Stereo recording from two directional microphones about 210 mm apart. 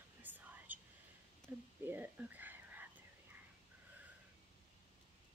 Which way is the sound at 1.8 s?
10° right (ahead or behind).